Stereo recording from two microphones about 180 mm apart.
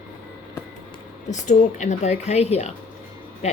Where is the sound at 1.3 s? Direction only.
40° left (ahead or behind).